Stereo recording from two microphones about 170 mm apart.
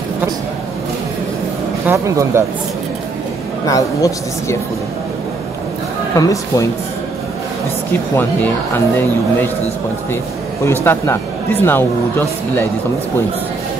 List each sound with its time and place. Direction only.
1.9 s speech: 15° right (ahead or behind)
3.6 s speech: 20° left (ahead or behind)
6.1 s speech: 20° left (ahead or behind)
8.7 s speech: 10° left (ahead or behind)
10.6 s speech: 15° left (ahead or behind)